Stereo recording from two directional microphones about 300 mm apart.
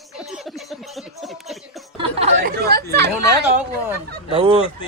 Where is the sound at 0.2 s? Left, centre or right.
Centre.